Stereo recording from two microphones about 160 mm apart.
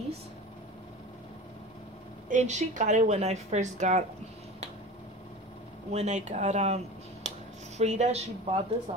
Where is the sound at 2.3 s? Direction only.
50° right (ahead or behind).